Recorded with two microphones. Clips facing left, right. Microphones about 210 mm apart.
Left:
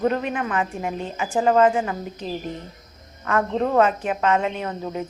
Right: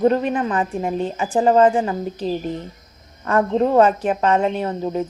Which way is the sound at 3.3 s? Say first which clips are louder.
Right 4 dB; 35° right (ahead or behind).